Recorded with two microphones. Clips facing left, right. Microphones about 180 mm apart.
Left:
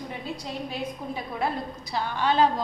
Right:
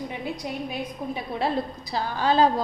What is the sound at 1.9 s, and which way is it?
Speech, 35° right (ahead or behind).